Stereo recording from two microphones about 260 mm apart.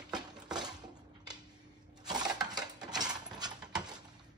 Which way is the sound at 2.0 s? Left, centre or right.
Centre.